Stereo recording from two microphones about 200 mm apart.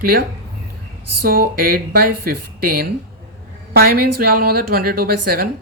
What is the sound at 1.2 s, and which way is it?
A woman's voice, 50° right (ahead or behind).